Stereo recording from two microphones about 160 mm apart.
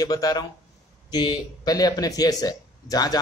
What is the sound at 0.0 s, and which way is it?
Speech, 25° left (ahead or behind).